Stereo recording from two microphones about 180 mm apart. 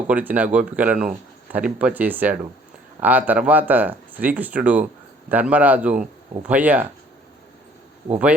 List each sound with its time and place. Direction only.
0.1 s speech: 10° right (ahead or behind)